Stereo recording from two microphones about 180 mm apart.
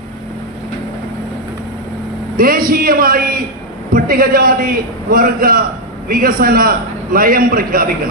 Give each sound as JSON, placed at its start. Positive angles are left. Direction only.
{"t": 2.3, "sound": "a man's voice", "side_deg": -55}